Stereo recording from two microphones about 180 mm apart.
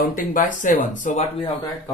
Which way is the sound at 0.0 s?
50° left (ahead or behind).